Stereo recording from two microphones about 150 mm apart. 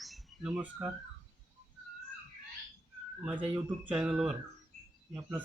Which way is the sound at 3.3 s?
35° right (ahead or behind).